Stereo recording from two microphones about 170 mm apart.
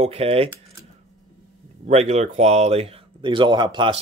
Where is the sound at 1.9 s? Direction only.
40° right (ahead or behind).